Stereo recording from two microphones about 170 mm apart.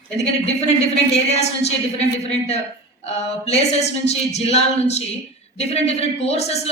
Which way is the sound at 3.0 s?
40° left (ahead or behind).